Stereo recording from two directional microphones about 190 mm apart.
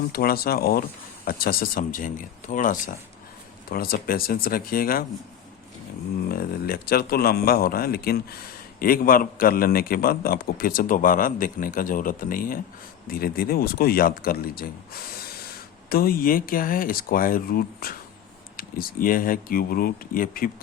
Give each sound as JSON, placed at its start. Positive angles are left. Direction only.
{"t": 0.1, "sound": "a man's voice", "side_deg": 55}
{"t": 6.2, "sound": "a man's voice", "side_deg": 50}